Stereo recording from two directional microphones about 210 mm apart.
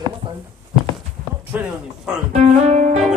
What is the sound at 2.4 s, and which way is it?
Speech, 30° right (ahead or behind).